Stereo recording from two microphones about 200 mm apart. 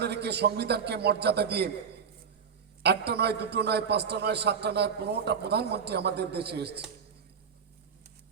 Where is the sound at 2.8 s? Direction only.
55° right (ahead or behind).